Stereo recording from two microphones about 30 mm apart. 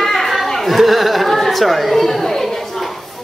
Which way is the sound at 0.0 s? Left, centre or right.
Centre.